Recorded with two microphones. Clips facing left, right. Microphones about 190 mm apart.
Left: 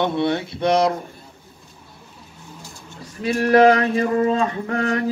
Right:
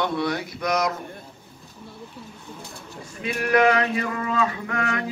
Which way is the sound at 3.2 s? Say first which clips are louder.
Left 6 dB; 35° left (ahead or behind).